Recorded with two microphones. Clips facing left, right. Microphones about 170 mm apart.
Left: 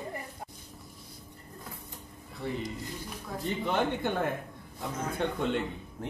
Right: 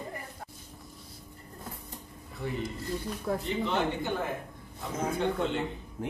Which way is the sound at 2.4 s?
Centre (ahead or behind).